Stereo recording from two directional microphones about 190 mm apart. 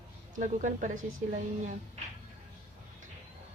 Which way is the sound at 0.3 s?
40° right (ahead or behind).